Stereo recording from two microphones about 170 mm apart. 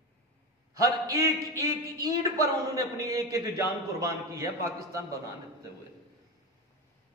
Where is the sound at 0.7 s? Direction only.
20° right (ahead or behind).